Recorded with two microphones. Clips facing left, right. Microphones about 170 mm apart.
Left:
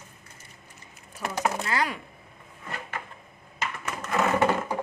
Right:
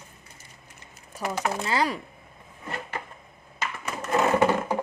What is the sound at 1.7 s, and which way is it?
Speech, 30° right (ahead or behind).